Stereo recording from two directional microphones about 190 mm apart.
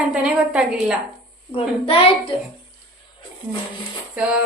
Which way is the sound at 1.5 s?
30° left (ahead or behind).